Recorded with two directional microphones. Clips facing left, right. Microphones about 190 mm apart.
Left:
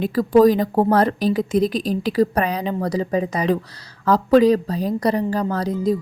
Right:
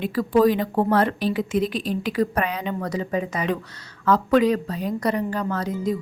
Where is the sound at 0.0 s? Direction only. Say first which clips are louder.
Left 5 dB; 40° left (ahead or behind).